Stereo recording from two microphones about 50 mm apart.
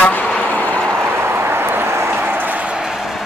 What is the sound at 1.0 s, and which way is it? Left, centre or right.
Vehicle, right.